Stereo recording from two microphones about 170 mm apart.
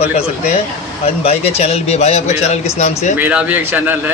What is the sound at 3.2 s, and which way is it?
Speech, 10° right (ahead or behind).